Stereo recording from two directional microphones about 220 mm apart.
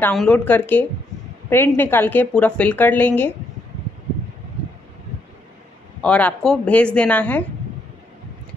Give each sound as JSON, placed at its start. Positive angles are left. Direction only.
{"t": 0.0, "sound": "a woman's voice", "side_deg": 5}
{"t": 6.0, "sound": "speech", "side_deg": 5}